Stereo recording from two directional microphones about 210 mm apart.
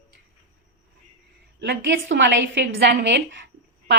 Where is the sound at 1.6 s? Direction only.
55° right (ahead or behind).